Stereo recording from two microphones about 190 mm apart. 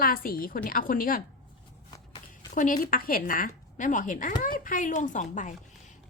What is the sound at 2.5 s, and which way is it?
A woman's voice, 45° left (ahead or behind).